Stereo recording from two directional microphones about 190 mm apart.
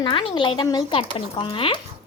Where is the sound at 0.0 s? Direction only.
25° left (ahead or behind).